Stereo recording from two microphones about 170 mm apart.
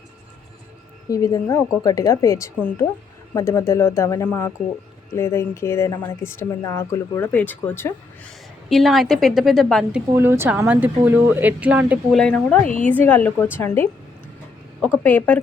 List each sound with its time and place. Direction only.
1.1 s a woman's voice: 20° left (ahead or behind)
8.7 s a woman's voice: centre (ahead or behind)
10.2 s speech: 15° right (ahead or behind)
12.1 s speech: 5° left (ahead or behind)
15.0 s speech: 10° left (ahead or behind)